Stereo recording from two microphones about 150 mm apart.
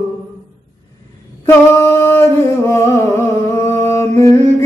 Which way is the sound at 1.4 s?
15° left (ahead or behind).